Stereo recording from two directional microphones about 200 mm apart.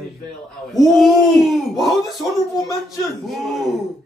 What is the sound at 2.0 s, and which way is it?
Speech, 20° left (ahead or behind).